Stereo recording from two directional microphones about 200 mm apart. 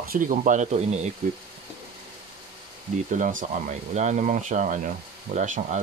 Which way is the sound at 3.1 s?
40° right (ahead or behind).